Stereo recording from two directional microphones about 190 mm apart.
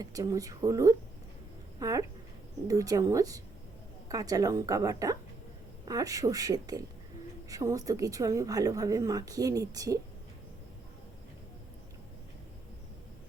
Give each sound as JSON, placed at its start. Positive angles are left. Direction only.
{"t": 0.0, "sound": "a woman's voice", "side_deg": -20}